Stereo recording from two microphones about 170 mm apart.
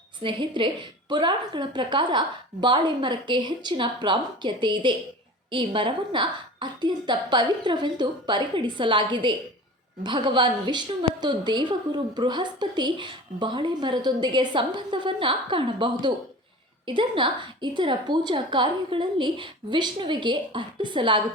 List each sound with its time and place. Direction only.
0.2 s a woman's voice: 30° right (ahead or behind)